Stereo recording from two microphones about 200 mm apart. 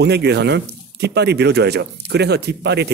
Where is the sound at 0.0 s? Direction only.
55° right (ahead or behind).